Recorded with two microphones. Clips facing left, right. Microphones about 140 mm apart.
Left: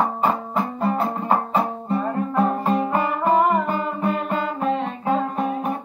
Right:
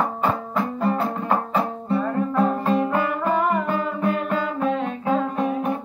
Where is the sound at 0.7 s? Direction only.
Centre (ahead or behind).